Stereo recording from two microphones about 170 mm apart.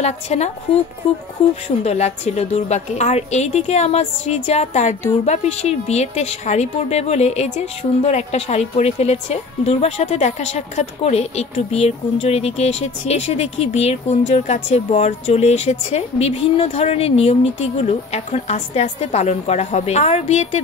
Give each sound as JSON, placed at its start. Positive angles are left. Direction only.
{"t": 0.0, "sound": "a woman's voice", "side_deg": 40}